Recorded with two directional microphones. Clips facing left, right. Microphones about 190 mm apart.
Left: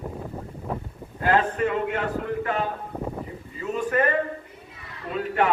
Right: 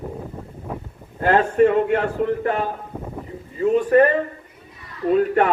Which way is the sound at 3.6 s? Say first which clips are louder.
Right 10 dB; 40° right (ahead or behind).